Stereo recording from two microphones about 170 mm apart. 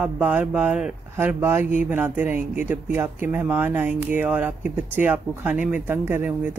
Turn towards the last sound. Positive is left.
turn(degrees=-10)  # may be behind; listen again after turning